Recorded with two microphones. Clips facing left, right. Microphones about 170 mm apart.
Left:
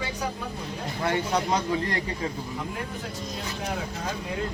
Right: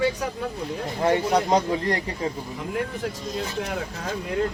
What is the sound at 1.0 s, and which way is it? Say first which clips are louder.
Speech: right 5 dB; 35° right (ahead or behind).